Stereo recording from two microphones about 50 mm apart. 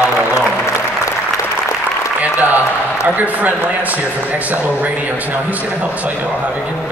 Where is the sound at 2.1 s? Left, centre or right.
Right.